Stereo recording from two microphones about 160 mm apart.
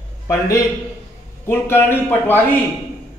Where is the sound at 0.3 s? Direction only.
20° left (ahead or behind).